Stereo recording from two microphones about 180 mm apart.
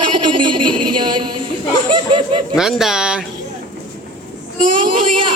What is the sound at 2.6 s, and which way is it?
Speech, centre (ahead or behind).